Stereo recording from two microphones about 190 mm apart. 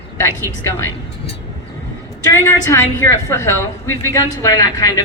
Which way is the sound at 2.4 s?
15° left (ahead or behind).